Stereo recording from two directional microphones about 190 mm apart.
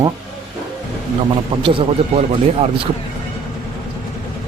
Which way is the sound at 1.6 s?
30° right (ahead or behind).